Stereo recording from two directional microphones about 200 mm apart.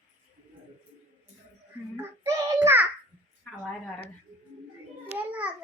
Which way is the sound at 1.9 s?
15° right (ahead or behind).